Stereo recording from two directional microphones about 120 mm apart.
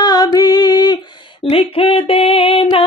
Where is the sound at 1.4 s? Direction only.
50° left (ahead or behind).